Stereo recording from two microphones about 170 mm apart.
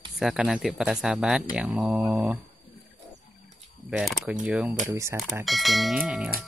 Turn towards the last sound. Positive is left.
turn(degrees=-5)  # may be behind; listen again after turning